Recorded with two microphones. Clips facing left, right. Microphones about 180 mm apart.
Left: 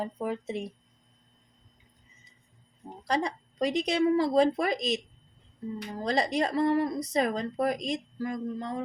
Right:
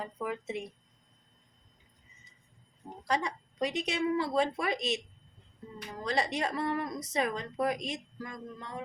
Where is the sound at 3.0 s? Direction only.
35° left (ahead or behind).